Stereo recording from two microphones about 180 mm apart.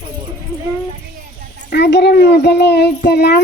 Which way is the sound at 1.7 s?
70° left (ahead or behind).